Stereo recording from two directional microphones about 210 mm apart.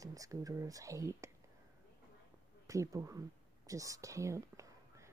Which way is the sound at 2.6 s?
15° right (ahead or behind).